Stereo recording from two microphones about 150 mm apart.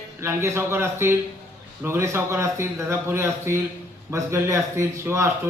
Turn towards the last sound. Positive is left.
turn(degrees=-20)  # may be behind; listen again after turning